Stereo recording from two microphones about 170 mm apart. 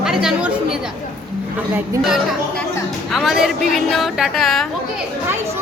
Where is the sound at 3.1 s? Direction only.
Centre (ahead or behind).